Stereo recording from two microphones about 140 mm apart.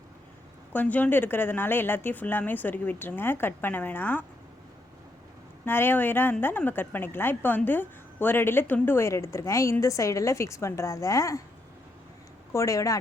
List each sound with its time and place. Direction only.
0.7 s a woman's voice: 10° left (ahead or behind)
5.6 s a woman's voice: 15° left (ahead or behind)
12.5 s a woman's voice: 25° left (ahead or behind)